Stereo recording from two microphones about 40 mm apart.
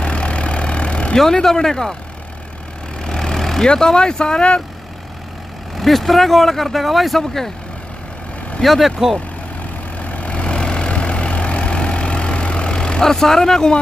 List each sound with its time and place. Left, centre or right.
0.0 s vehicle: left
1.1 s speech: centre
3.0 s vehicle: centre
5.8 s speech: centre
8.6 s speech: centre
9.9 s vehicle: left
13.0 s speech: centre